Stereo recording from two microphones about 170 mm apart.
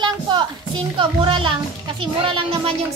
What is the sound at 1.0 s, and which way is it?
Speech, 30° right (ahead or behind).